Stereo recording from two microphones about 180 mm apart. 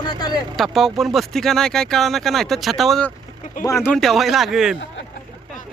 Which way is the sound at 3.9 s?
Centre (ahead or behind).